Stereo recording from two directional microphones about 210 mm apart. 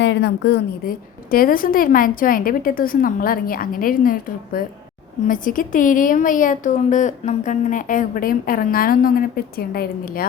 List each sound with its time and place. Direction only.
0.0 s a woman's voice: 55° left (ahead or behind)